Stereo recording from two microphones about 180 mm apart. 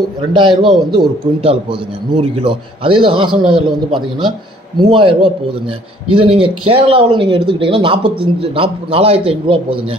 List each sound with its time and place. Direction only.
0.3 s speech: 25° right (ahead or behind)